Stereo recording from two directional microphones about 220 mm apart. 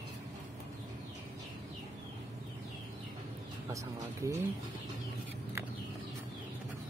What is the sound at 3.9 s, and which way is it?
Speech, 15° right (ahead or behind).